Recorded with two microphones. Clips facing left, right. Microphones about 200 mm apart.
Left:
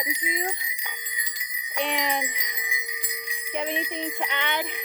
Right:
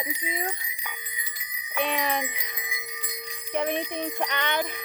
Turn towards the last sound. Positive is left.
turn(degrees=15)  # may be behind; listen again after turning